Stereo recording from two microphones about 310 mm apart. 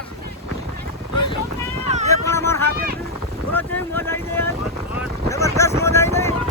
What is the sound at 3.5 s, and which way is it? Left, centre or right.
Boat, centre.